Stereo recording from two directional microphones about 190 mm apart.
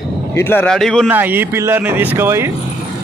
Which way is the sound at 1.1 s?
10° right (ahead or behind).